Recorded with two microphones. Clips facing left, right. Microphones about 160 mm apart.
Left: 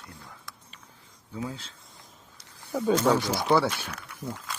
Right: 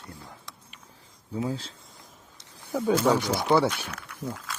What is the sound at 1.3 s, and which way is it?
Speech, 30° right (ahead or behind).